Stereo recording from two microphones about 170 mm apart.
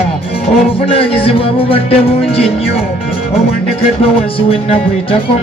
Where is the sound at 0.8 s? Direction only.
35° left (ahead or behind).